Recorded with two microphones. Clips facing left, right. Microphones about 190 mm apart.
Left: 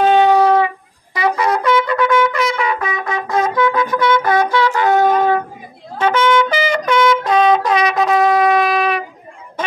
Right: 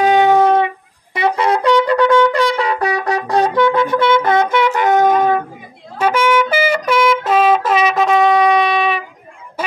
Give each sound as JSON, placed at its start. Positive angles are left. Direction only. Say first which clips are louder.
{"t": 0.0, "sound": "wind instrument", "louder": "even", "side_deg": -15}
{"t": 5.9, "sound": "brass instrument", "louder": "even", "side_deg": -10}